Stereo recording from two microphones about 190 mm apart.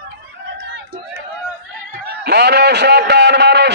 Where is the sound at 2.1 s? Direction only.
60° right (ahead or behind).